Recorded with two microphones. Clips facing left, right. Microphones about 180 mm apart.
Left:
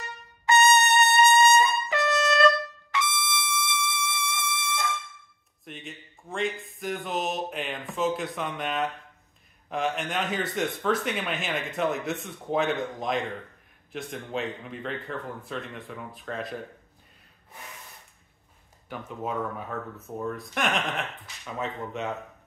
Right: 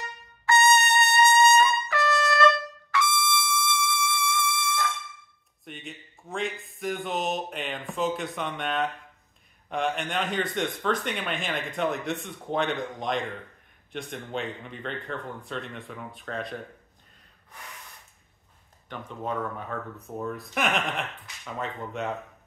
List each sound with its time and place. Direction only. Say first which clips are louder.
0.5 s brass instrument: left 1 dB; 20° left (ahead or behind)
2.9 s music: right 4 dB; 20° left (ahead or behind)
5.7 s speech: even; centre (ahead or behind)
18.9 s speech: even; 5° left (ahead or behind)